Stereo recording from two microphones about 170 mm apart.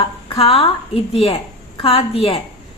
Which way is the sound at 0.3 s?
35° left (ahead or behind).